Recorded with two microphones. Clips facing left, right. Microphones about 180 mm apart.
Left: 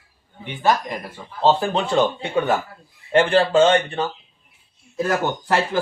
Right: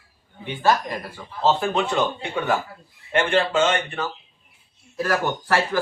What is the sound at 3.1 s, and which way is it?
Speech, 35° left (ahead or behind).